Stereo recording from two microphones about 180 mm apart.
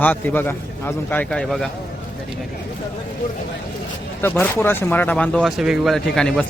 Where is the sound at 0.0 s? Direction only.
10° left (ahead or behind).